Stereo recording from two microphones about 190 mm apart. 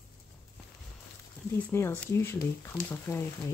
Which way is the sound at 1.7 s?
15° left (ahead or behind).